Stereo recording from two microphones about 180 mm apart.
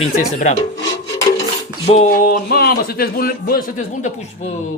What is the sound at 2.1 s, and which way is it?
A man's voice, 50° left (ahead or behind).